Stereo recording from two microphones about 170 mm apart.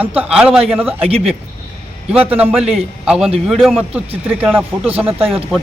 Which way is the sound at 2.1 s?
10° right (ahead or behind).